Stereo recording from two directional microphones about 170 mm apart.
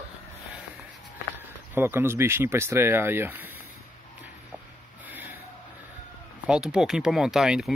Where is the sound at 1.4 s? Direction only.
15° right (ahead or behind).